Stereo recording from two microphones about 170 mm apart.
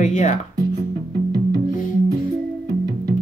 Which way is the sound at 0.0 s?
45° left (ahead or behind).